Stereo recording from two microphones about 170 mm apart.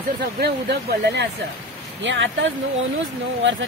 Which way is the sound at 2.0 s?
90° right.